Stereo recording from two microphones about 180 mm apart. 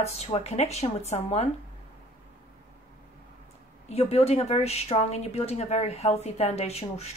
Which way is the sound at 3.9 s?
35° left (ahead or behind).